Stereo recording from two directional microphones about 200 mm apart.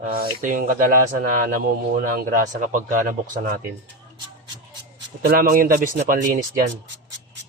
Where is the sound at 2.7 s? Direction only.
40° right (ahead or behind).